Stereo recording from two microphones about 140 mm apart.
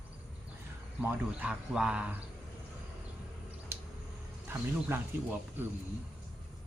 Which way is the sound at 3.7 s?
15° right (ahead or behind).